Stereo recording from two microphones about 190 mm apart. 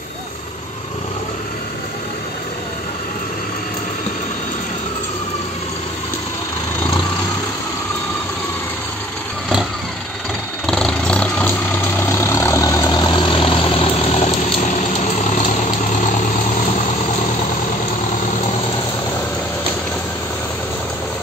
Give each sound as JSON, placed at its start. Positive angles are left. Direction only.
{"t": 10.7, "sound": "vehicle", "side_deg": 5}